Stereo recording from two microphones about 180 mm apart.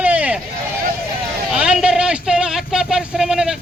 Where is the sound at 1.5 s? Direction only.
5° right (ahead or behind).